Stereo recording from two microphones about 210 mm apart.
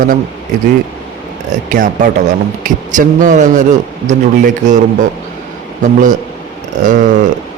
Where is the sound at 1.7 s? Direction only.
40° right (ahead or behind).